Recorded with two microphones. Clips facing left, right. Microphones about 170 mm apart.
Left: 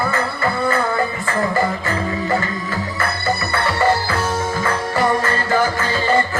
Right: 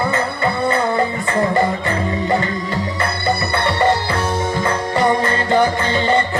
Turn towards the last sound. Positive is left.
turn(degrees=-20)  # may be behind; listen again after turning